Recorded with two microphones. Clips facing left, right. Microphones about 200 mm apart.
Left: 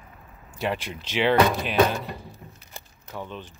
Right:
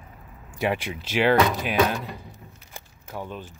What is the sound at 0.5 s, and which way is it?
Speech, 10° right (ahead or behind).